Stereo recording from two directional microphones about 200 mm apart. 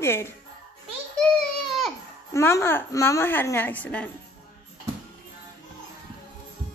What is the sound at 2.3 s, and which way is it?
A woman's voice, 15° left (ahead or behind).